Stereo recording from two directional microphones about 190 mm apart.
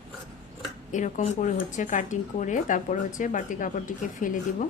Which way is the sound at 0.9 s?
40° left (ahead or behind).